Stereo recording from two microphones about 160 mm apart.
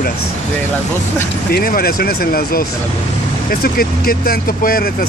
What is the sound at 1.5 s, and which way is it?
Speech, 70° left (ahead or behind).